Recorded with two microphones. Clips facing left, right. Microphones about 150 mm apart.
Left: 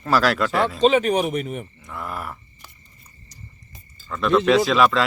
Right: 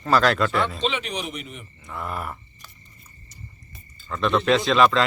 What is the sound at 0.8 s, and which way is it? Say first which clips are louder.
Speech: left 10 dB; 45° left (ahead or behind).